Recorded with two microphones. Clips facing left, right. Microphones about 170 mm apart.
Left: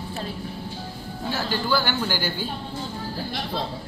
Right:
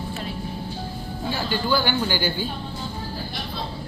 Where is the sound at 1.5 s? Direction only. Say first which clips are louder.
Right 2 dB; 5° left (ahead or behind).